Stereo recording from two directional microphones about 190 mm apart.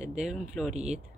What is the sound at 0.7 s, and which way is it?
Speech, 35° right (ahead or behind).